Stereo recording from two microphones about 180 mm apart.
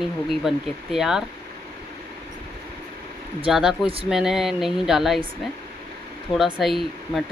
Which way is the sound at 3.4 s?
5° right (ahead or behind).